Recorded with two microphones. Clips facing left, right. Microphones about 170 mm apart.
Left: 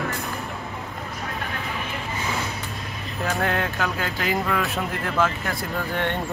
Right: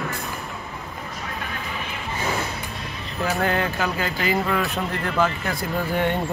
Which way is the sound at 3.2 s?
Centre (ahead or behind).